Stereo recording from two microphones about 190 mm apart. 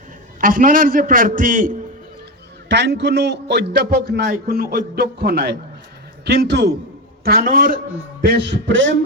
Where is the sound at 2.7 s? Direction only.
65° right (ahead or behind).